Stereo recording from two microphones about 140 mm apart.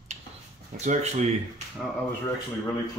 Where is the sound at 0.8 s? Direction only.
55° right (ahead or behind).